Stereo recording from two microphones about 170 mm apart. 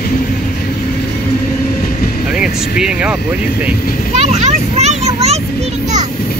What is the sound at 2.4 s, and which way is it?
Vehicle, 5° right (ahead or behind).